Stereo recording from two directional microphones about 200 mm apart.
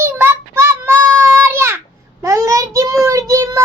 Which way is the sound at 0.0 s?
10° right (ahead or behind).